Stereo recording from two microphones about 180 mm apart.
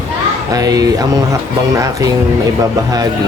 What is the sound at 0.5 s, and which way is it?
Speech, 20° right (ahead or behind).